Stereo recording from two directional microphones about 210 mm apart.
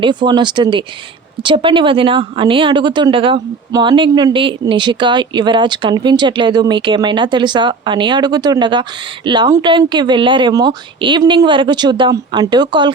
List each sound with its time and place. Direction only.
0.0 s speech: 20° right (ahead or behind)